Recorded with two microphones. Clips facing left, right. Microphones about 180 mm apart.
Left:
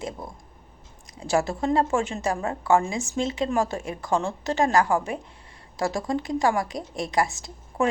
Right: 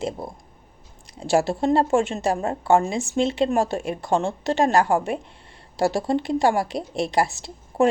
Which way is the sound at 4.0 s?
25° right (ahead or behind).